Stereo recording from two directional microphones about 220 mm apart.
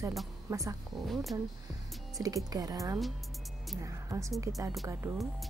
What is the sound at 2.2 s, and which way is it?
A woman's voice, 15° right (ahead or behind).